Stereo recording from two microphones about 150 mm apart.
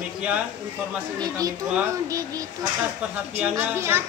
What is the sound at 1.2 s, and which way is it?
Speech, 25° right (ahead or behind).